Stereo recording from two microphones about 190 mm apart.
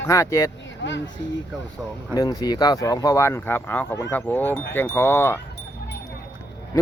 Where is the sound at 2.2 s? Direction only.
20° left (ahead or behind).